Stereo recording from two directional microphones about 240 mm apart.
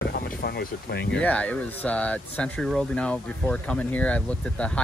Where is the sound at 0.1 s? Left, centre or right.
Left.